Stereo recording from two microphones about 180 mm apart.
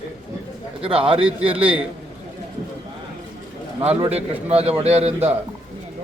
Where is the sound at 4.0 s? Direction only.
35° right (ahead or behind).